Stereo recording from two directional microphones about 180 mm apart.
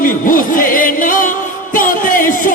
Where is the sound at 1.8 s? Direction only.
50° left (ahead or behind).